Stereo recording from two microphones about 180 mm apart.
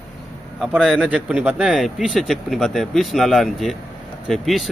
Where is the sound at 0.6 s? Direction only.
5° right (ahead or behind).